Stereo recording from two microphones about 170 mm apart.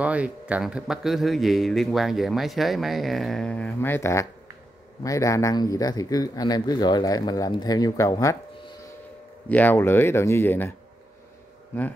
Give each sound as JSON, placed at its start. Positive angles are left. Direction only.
{"t": 0.0, "sound": "speech", "side_deg": -5}
{"t": 9.5, "sound": "speech", "side_deg": 10}